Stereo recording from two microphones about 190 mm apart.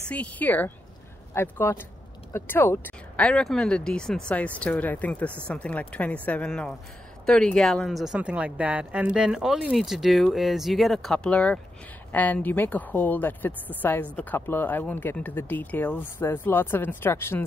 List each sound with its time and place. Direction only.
0.1 s speech: 10° left (ahead or behind)